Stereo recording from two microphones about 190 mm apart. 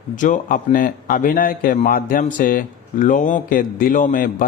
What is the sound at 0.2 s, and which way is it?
Speech, 40° left (ahead or behind).